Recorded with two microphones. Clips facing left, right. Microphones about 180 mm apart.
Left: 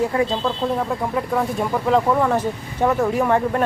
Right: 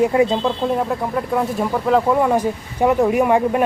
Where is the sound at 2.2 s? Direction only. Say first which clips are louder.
Right 2 dB; 10° right (ahead or behind).